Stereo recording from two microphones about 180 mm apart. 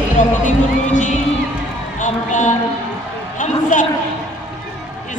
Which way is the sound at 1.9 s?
45° left (ahead or behind).